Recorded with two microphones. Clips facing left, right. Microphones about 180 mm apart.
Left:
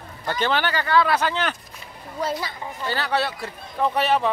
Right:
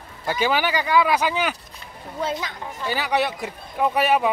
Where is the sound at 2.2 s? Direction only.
5° left (ahead or behind).